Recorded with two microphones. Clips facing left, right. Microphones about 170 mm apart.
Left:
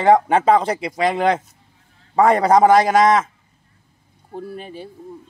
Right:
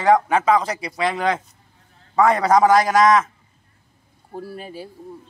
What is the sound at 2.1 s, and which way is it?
Speech, 30° left (ahead or behind).